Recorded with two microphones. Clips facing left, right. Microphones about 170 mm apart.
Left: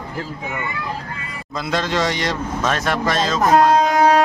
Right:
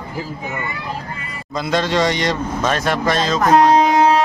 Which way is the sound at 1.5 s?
Centre (ahead or behind).